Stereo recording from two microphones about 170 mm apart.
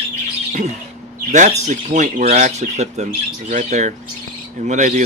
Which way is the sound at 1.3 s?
45° right (ahead or behind).